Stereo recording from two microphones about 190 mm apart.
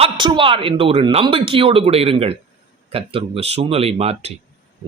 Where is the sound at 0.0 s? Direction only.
25° right (ahead or behind).